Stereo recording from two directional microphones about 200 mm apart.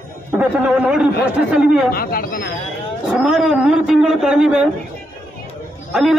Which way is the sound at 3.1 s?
Centre (ahead or behind).